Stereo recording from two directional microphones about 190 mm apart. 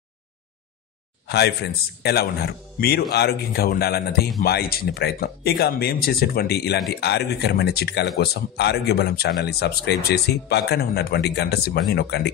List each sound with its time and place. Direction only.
1.2 s speech: 60° left (ahead or behind)